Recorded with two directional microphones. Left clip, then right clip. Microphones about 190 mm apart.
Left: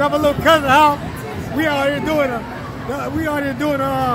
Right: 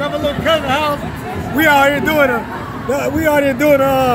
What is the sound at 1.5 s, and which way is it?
A man's voice, centre (ahead or behind).